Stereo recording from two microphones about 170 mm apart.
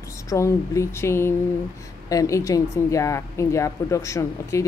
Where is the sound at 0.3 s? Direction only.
15° left (ahead or behind).